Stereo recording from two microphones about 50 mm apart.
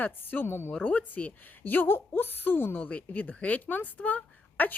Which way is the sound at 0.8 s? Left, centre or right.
Left.